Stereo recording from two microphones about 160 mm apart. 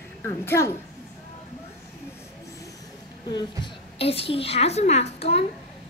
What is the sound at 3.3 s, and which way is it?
A woman's voice, 35° left (ahead or behind).